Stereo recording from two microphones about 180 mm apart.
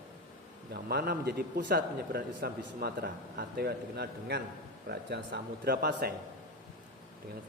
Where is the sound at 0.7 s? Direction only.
60° right (ahead or behind).